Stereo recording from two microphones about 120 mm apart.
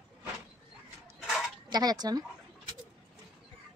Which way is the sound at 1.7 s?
35° right (ahead or behind).